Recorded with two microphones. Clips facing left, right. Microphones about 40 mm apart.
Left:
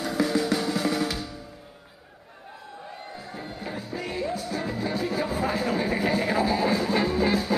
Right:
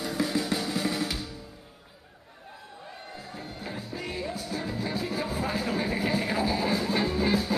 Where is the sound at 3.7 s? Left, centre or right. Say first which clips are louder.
Left 3 dB; centre.